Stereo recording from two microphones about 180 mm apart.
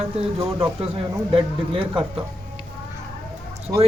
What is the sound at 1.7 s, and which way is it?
Speech, 30° right (ahead or behind).